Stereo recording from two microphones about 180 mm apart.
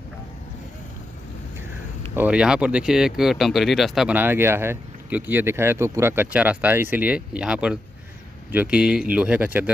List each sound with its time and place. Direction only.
2.1 s speech: 5° right (ahead or behind)